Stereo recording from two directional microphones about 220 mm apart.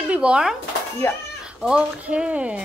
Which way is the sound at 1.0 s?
10° left (ahead or behind).